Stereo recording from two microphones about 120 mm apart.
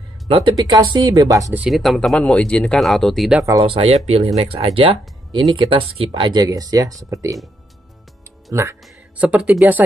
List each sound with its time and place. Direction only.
0.6 s speech: 35° right (ahead or behind)
1.7 s speech: centre (ahead or behind)
3.6 s speech: 55° right (ahead or behind); by 7.3 s 25° right (ahead or behind)
8.5 s speech: 25° right (ahead or behind)
9.2 s speech: 10° right (ahead or behind)